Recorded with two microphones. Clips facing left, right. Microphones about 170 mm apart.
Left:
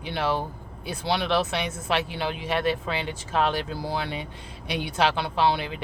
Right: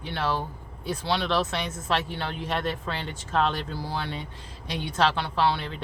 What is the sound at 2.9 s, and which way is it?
Speech, 15° left (ahead or behind).